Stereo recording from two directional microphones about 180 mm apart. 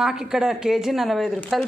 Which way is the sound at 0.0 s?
5° right (ahead or behind).